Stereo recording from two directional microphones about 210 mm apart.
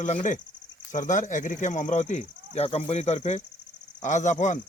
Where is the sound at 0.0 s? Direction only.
35° left (ahead or behind).